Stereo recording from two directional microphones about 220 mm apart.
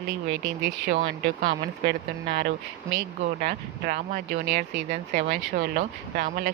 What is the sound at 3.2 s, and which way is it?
Speech, 45° right (ahead or behind).